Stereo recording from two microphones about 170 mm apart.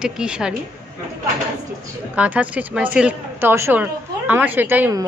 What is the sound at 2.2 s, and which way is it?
A woman's voice, 10° right (ahead or behind).